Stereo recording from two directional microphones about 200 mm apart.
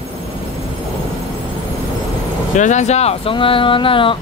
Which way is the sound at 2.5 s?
35° left (ahead or behind).